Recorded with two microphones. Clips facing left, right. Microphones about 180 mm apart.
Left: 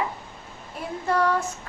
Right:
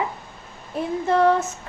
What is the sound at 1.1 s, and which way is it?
Speech, 25° right (ahead or behind).